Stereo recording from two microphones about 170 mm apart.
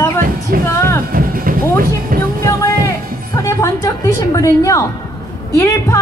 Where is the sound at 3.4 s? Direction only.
20° left (ahead or behind).